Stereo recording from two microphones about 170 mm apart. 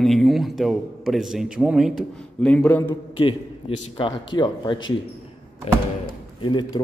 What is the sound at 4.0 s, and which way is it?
Speech, 30° left (ahead or behind).